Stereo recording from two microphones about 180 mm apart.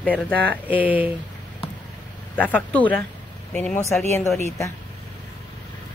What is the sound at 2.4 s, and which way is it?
Speech, 10° left (ahead or behind).